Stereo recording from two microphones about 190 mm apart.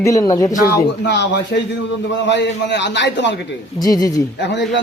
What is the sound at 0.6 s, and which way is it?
A man's voice, 60° left (ahead or behind).